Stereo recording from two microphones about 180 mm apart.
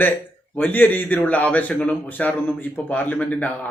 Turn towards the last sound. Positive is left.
turn(degrees=10)  # may be behind; listen again after turning